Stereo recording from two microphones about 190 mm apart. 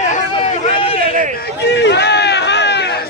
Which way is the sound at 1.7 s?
65° left (ahead or behind).